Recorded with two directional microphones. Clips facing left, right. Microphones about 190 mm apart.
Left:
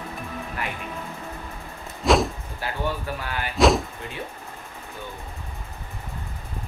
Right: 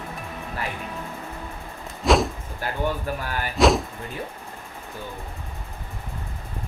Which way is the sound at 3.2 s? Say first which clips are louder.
Right 1 dB; 45° right (ahead or behind).